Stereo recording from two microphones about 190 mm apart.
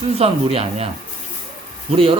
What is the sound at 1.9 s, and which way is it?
Speech, 30° right (ahead or behind).